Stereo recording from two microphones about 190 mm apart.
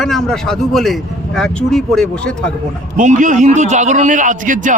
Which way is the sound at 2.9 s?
40° right (ahead or behind).